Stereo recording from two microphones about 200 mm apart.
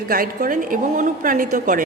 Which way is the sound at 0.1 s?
45° right (ahead or behind).